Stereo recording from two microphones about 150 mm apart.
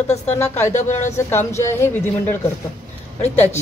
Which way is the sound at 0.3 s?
15° left (ahead or behind).